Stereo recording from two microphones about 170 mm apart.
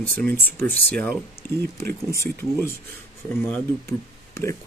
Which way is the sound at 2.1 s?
15° left (ahead or behind).